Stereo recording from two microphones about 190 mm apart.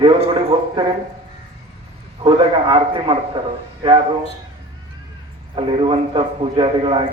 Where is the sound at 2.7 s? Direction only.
25° right (ahead or behind).